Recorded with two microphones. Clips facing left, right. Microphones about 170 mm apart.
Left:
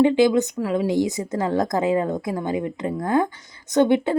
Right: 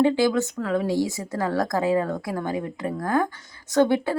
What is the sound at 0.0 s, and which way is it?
A woman's voice, 20° left (ahead or behind).